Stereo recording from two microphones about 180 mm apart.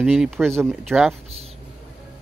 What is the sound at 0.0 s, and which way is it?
Speech, 5° right (ahead or behind).